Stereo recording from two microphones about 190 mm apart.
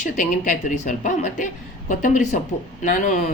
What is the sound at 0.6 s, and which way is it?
Speech, 40° left (ahead or behind).